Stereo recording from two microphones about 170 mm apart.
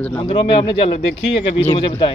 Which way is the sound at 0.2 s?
35° left (ahead or behind).